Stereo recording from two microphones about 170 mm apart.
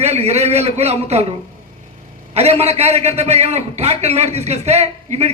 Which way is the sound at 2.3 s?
40° right (ahead or behind).